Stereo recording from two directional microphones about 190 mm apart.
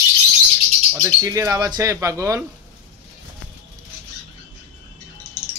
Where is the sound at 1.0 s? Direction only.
15° right (ahead or behind).